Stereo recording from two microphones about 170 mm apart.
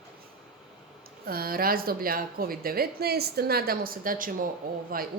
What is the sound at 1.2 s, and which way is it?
A woman's voice, 60° right (ahead or behind).